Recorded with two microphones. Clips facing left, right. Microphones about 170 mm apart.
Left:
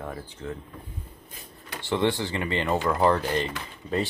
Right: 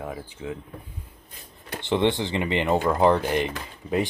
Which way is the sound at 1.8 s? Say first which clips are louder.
Right 2 dB; 20° right (ahead or behind).